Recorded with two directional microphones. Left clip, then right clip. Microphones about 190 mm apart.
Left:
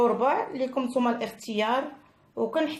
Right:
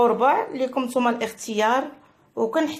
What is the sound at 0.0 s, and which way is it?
A woman's voice, 20° right (ahead or behind).